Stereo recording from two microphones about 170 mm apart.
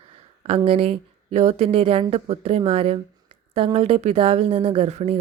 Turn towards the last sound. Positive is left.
turn(degrees=-35)  # may be behind; listen again after turning